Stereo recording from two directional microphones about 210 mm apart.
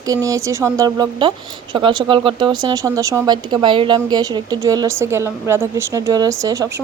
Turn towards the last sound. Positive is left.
turn(degrees=-15)  # may be behind; listen again after turning